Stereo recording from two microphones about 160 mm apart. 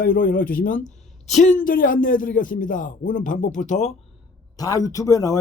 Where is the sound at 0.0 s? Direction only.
60° left (ahead or behind).